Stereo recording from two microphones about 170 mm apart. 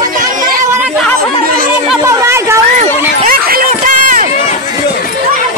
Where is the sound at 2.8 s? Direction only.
60° right (ahead or behind).